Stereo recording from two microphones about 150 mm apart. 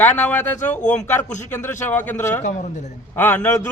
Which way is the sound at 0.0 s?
10° left (ahead or behind).